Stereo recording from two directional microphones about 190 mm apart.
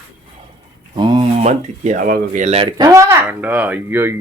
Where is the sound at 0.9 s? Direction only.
25° right (ahead or behind).